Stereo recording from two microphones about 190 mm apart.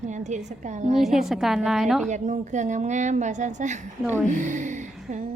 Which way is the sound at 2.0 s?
40° right (ahead or behind).